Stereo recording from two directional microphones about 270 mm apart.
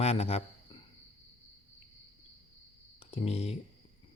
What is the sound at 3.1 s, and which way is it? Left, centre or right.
Speech, left.